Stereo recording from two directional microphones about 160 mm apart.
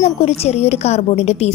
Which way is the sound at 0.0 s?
40° left (ahead or behind).